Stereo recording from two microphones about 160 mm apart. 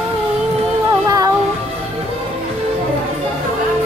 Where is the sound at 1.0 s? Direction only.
20° right (ahead or behind).